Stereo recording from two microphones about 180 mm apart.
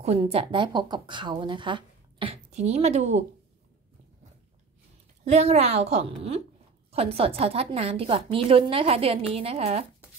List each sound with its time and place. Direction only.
0.0 s speech: 35° right (ahead or behind)
5.3 s a woman's voice: 35° right (ahead or behind)